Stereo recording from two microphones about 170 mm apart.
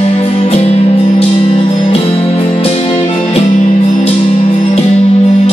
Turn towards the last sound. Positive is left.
turn(degrees=35)  # may be behind; listen again after turning